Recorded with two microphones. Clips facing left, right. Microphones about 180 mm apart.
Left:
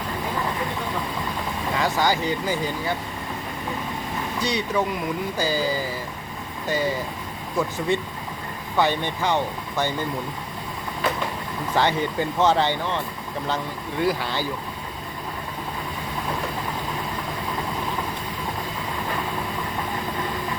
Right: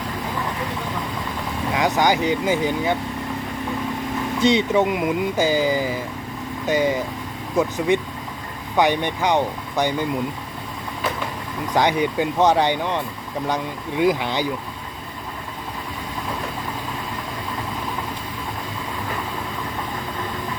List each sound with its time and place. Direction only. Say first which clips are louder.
1.7 s speech: right 4 dB; 15° right (ahead or behind)
4.4 s speech: right 7 dB; 25° right (ahead or behind)
11.7 s speech: right 3 dB; 15° right (ahead or behind)